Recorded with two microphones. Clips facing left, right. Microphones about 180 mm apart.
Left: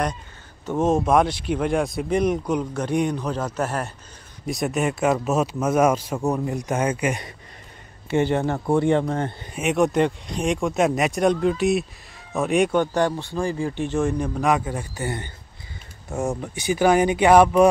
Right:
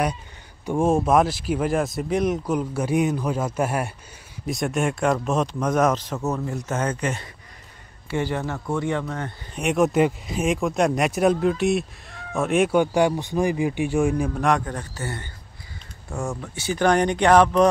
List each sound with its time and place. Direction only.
0.7 s speech: 10° right (ahead or behind)
4.5 s speech: centre (ahead or behind)
8.1 s speech: 25° left (ahead or behind)
9.6 s speech: centre (ahead or behind)
14.5 s speech: 5° left (ahead or behind)